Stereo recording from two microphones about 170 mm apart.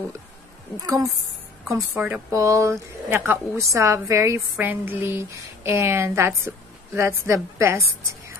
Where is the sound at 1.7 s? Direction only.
10° right (ahead or behind).